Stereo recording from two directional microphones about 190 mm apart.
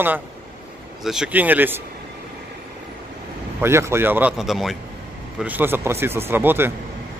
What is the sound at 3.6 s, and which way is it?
Speech, 15° right (ahead or behind).